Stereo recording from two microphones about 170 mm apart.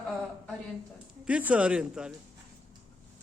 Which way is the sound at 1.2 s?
10° right (ahead or behind).